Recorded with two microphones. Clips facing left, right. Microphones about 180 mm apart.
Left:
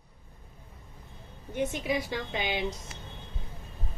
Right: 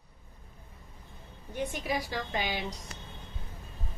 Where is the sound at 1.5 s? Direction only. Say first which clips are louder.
Left 3 dB; 20° left (ahead or behind).